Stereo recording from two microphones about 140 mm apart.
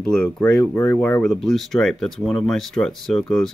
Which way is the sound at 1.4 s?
Centre (ahead or behind).